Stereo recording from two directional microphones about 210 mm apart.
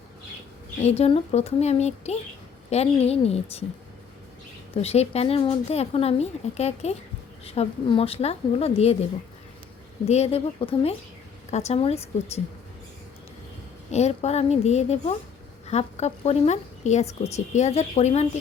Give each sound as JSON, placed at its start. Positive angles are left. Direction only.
{"t": 0.8, "sound": "a woman's voice", "side_deg": 30}
{"t": 4.7, "sound": "a woman's voice", "side_deg": 30}
{"t": 10.1, "sound": "a woman's voice", "side_deg": 30}
{"t": 13.9, "sound": "a woman's voice", "side_deg": 30}